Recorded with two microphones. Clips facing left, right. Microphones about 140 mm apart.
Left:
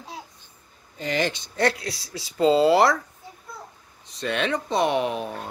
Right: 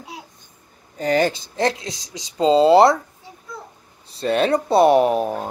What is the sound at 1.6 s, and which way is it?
A woman's voice, 20° right (ahead or behind).